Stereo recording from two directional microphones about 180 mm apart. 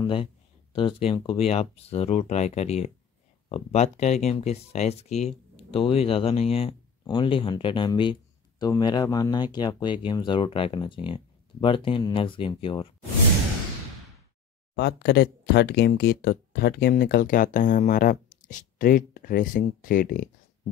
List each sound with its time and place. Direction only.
0.0 s speech: 30° left (ahead or behind)
14.8 s speech: 70° left (ahead or behind); by 20.2 s 50° left (ahead or behind)